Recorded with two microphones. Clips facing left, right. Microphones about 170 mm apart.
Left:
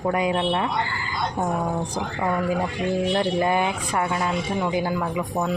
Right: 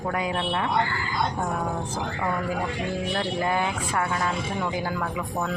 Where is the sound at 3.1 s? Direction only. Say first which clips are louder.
Left 3 dB; 20° left (ahead or behind).